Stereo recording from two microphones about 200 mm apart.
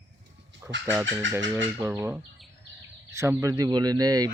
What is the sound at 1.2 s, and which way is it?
Speech, 70° right (ahead or behind).